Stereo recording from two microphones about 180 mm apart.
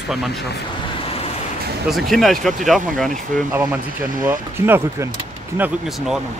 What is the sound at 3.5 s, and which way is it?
Speech, 10° right (ahead or behind).